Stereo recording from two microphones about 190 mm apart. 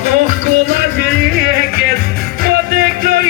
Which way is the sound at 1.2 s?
50° right (ahead or behind).